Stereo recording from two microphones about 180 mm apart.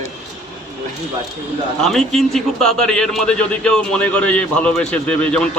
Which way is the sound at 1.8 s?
Centre (ahead or behind).